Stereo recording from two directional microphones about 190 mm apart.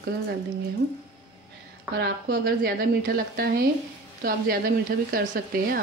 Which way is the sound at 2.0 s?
55° right (ahead or behind).